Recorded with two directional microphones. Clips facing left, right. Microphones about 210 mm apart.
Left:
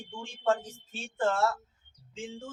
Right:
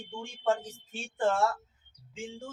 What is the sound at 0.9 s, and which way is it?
Speech, 15° right (ahead or behind).